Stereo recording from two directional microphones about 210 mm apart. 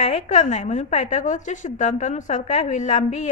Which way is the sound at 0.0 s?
35° left (ahead or behind).